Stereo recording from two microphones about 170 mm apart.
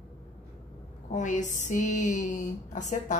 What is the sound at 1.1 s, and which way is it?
Speech, 45° left (ahead or behind).